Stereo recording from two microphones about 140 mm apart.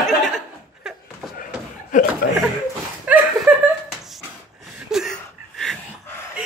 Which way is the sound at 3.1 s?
10° right (ahead or behind).